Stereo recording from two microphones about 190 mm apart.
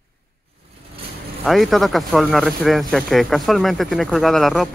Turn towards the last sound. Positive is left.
turn(degrees=0)  # may be behind; listen again after turning